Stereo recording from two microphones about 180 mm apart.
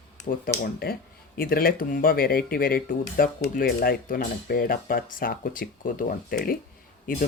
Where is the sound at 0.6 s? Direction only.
55° left (ahead or behind).